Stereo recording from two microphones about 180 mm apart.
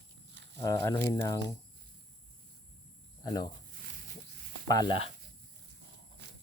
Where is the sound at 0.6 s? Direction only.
20° left (ahead or behind).